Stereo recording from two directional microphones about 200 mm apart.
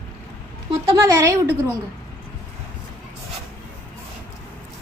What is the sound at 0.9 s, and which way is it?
Speech, 15° right (ahead or behind).